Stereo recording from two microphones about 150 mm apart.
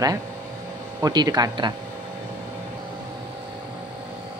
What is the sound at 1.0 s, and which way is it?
Speech, 25° right (ahead or behind).